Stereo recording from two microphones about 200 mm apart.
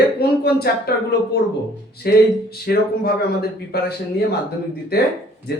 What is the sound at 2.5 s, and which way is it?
Speech, 50° left (ahead or behind).